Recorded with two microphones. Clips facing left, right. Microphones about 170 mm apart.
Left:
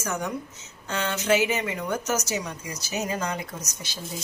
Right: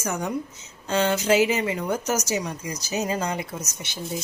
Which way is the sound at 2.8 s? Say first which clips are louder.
Right 2 dB; 30° right (ahead or behind).